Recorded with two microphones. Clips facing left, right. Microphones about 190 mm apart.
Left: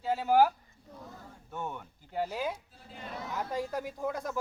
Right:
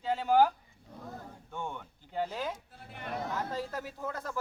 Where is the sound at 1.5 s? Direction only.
5° left (ahead or behind).